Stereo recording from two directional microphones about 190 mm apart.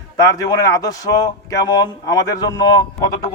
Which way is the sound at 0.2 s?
20° left (ahead or behind).